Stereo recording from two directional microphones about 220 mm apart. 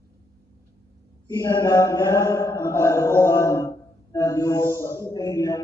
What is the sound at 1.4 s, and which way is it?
Mantra, 15° left (ahead or behind).